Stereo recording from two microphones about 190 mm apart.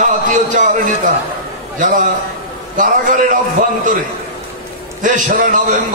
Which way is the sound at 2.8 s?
45° right (ahead or behind).